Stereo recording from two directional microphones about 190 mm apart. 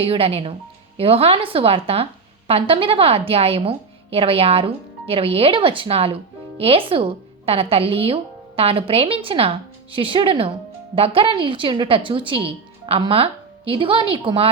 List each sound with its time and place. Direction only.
0.0 s a woman's voice: 30° right (ahead or behind)